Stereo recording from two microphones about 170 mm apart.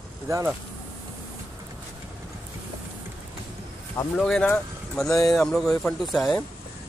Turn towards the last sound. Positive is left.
turn(degrees=0)  # may be behind; listen again after turning